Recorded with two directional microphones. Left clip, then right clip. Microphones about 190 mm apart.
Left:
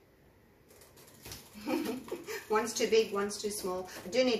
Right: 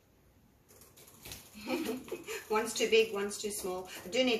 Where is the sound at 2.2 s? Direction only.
15° left (ahead or behind).